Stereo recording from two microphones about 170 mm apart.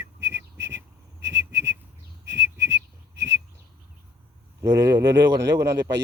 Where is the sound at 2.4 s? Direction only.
90° right.